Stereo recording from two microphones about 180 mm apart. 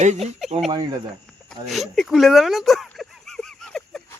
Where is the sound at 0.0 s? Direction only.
40° right (ahead or behind).